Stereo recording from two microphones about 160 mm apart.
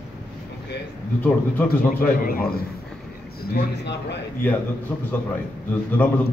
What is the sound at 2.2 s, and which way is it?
Speech, 70° left (ahead or behind).